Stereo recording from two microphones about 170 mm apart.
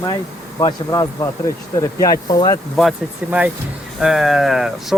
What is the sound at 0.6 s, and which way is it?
Speech, 25° left (ahead or behind).